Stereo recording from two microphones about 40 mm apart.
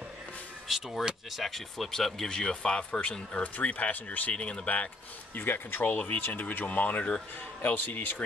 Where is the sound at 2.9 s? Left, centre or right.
Left.